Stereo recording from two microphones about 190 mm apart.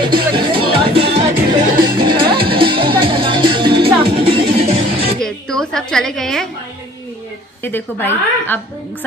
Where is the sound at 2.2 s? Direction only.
55° right (ahead or behind).